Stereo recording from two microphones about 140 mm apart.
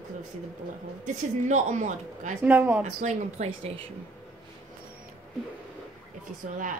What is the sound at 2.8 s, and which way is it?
Speech, 55° right (ahead or behind).